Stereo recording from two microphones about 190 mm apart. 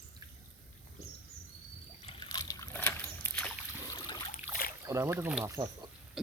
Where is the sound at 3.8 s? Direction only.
25° left (ahead or behind).